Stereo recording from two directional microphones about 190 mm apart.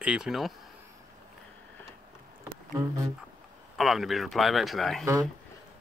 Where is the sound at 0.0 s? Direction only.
5° right (ahead or behind).